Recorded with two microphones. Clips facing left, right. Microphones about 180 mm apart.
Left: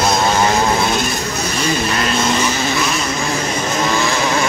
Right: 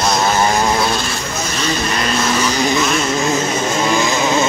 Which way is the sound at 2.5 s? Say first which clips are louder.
Right 3 dB; 15° right (ahead or behind).